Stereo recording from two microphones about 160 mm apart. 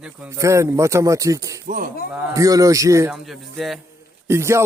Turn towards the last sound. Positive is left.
turn(degrees=-15)  # may be behind; listen again after turning